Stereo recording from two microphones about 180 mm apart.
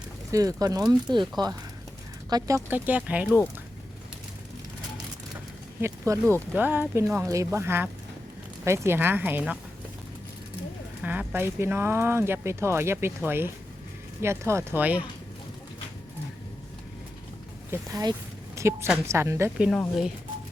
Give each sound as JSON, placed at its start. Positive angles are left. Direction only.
{"t": 0.3, "sound": "speech", "side_deg": -20}
{"t": 2.6, "sound": "speech", "side_deg": -10}
{"t": 3.2, "sound": "speech", "side_deg": 5}
{"t": 5.8, "sound": "speech", "side_deg": -15}
{"t": 11.0, "sound": "speech", "side_deg": -10}
{"t": 17.7, "sound": "a woman's voice", "side_deg": -20}